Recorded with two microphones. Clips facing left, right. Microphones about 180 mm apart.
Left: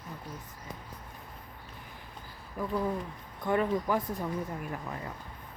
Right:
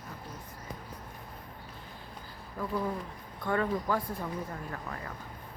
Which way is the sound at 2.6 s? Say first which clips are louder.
Left 2 dB; 20° left (ahead or behind).